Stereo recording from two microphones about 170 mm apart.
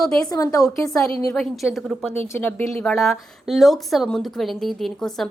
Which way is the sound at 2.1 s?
15° left (ahead or behind).